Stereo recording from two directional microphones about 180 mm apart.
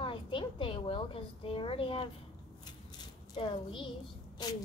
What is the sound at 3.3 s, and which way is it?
Speech, 30° left (ahead or behind).